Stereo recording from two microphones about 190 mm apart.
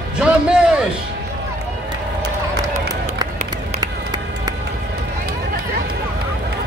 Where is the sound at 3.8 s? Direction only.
20° right (ahead or behind).